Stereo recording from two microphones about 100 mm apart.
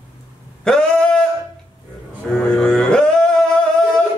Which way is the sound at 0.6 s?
10° left (ahead or behind).